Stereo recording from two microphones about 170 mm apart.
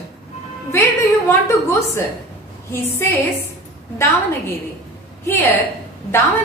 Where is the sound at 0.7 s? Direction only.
15° left (ahead or behind).